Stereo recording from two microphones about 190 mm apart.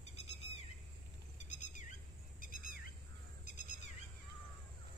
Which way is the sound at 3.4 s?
40° left (ahead or behind).